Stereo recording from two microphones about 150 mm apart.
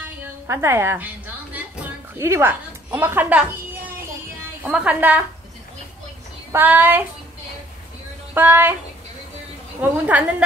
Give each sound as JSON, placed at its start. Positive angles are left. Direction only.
{"t": 0.0, "sound": "a sound", "side_deg": -15}
{"t": 2.1, "sound": "a woman's voice", "side_deg": -20}
{"t": 6.5, "sound": "a woman's voice", "side_deg": -10}
{"t": 8.4, "sound": "a woman's voice", "side_deg": -15}
{"t": 9.8, "sound": "a woman's voice", "side_deg": -10}